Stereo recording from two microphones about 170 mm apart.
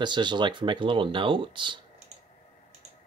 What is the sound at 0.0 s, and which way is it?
Speech, 25° right (ahead or behind).